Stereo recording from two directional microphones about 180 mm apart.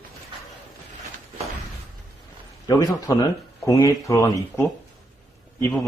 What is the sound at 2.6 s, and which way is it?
Speech, 20° left (ahead or behind).